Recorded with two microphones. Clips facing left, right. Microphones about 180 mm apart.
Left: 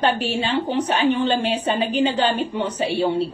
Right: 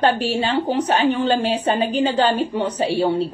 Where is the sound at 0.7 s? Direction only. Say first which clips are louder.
Even; 35° right (ahead or behind).